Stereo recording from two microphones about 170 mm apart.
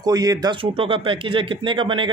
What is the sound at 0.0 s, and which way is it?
Speech, 20° right (ahead or behind).